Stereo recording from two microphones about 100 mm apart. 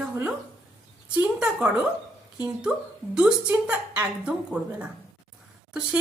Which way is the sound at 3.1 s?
15° right (ahead or behind).